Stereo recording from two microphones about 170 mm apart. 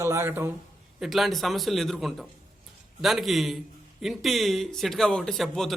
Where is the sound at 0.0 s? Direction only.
15° right (ahead or behind).